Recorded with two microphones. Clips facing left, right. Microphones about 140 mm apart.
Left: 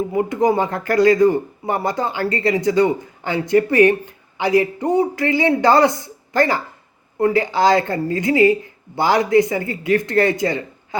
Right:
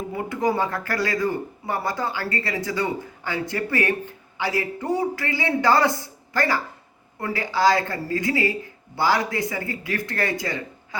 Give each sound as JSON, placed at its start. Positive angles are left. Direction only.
{"t": 0.1, "sound": "speech", "side_deg": 20}